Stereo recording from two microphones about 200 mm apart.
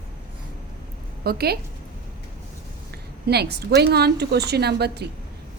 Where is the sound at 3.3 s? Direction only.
55° right (ahead or behind).